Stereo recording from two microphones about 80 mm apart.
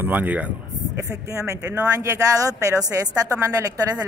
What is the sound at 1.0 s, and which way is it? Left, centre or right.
Speech, right.